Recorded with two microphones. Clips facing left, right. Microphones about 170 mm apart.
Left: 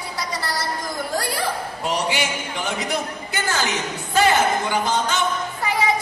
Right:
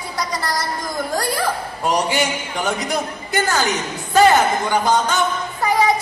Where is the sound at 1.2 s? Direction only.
40° right (ahead or behind).